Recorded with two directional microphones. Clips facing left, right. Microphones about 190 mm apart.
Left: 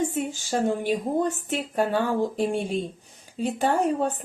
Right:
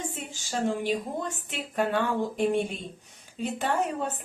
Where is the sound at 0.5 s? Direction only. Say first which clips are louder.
Left 3 dB; 45° left (ahead or behind).